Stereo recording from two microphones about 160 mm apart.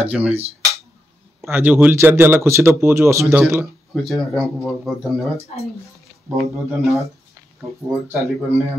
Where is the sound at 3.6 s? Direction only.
Centre (ahead or behind).